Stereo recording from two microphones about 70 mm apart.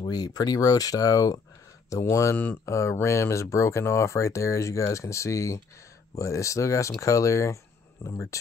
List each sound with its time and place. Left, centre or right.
0.0 s speech: left
2.3 s speech: left
2.6 s speech: left